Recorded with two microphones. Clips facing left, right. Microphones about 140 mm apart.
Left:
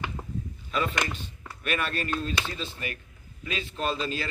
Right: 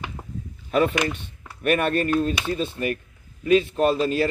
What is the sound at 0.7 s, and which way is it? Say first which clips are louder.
A man's voice: right 8 dB; 55° right (ahead or behind).